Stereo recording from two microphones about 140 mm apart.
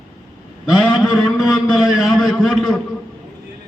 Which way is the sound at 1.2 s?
Centre (ahead or behind).